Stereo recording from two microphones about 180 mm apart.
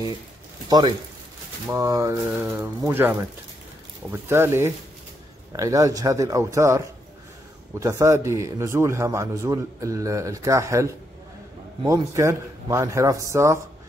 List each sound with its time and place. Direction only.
0.7 s a man's voice: 20° right (ahead or behind)
7.8 s a man's voice: 15° right (ahead or behind)